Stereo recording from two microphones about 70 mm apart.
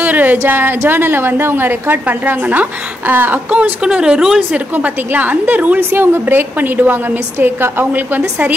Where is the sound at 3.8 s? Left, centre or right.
Centre.